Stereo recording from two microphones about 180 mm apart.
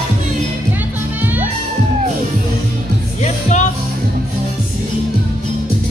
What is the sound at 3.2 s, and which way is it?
Music, 40° left (ahead or behind).